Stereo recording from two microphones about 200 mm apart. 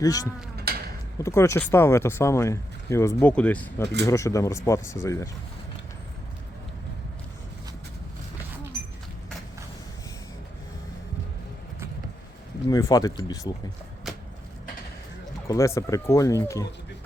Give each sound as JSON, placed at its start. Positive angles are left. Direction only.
{"t": 0.0, "sound": "speech", "side_deg": 20}
{"t": 0.7, "sound": "a sound", "side_deg": -50}
{"t": 1.2, "sound": "speech", "side_deg": 15}
{"t": 12.7, "sound": "speech", "side_deg": 20}
{"t": 15.4, "sound": "speech", "side_deg": 15}